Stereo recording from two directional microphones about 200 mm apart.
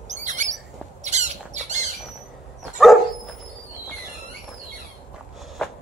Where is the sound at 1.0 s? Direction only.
35° right (ahead or behind).